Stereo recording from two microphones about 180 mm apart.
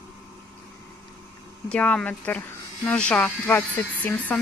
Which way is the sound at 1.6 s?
5° left (ahead or behind).